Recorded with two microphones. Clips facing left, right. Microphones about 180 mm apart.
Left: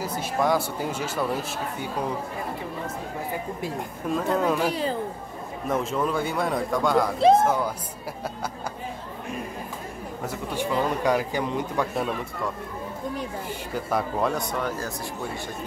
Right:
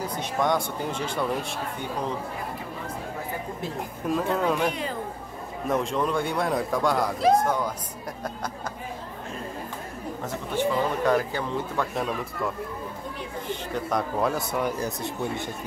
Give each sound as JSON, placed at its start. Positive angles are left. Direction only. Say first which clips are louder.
{"t": 0.0, "sound": "speech", "louder": "left 1 dB", "side_deg": 5}
{"t": 4.1, "sound": "a man's voice", "louder": "left 1 dB", "side_deg": 0}
{"t": 10.2, "sound": "a man's voice", "louder": "right 2 dB", "side_deg": 10}
{"t": 13.5, "sound": "speech", "louder": "right 2 dB", "side_deg": 5}
{"t": 14.6, "sound": "speech", "louder": "right 2 dB", "side_deg": -20}